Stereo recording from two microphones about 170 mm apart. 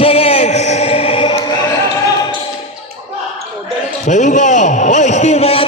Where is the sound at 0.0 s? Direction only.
35° left (ahead or behind).